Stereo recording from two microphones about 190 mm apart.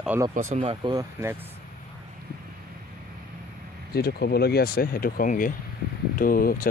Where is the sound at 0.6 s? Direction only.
25° right (ahead or behind).